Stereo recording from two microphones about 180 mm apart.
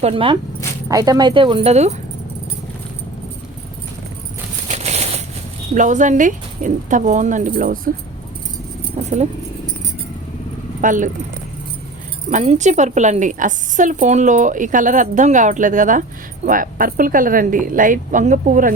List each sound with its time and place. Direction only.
0.0 s speech: 30° right (ahead or behind)
0.9 s speech: 20° right (ahead or behind); by 2.0 s 40° right (ahead or behind)
4.7 s a sound: 40° right (ahead or behind)
5.7 s a woman's voice: 45° right (ahead or behind)
9.0 s vehicle: 45° right (ahead or behind)
10.8 s speech: 45° right (ahead or behind)
12.3 s a woman's voice: 40° right (ahead or behind)